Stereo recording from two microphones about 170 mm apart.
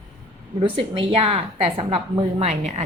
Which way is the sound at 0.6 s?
30° right (ahead or behind).